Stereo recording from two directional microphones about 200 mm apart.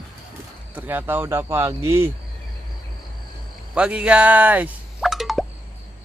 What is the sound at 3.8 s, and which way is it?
Plop, 5° right (ahead or behind).